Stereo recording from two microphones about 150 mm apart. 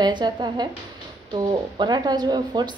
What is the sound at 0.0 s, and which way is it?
A woman's voice, 30° right (ahead or behind).